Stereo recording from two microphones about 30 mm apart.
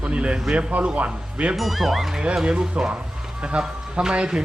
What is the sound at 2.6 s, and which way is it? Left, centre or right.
Speech, right.